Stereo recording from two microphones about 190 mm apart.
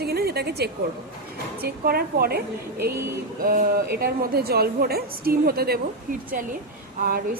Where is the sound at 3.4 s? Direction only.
50° right (ahead or behind).